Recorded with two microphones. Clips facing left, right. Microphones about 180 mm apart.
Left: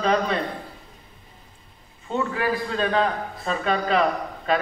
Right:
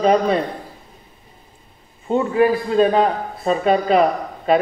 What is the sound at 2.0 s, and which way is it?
Speech, 30° right (ahead or behind).